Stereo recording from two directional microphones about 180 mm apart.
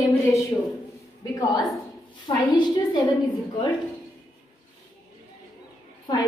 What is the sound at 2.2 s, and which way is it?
Speech, 25° left (ahead or behind).